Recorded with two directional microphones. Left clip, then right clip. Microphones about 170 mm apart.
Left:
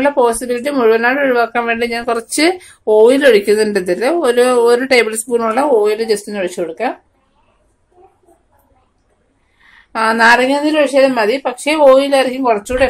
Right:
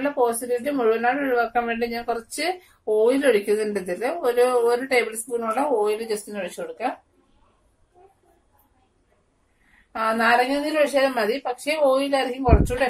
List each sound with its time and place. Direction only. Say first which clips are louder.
0.0 s speech: left 10 dB; 55° left (ahead or behind)
9.9 s a woman's voice: left 10 dB; 55° left (ahead or behind)
10.6 s speech: left 9 dB; 35° left (ahead or behind)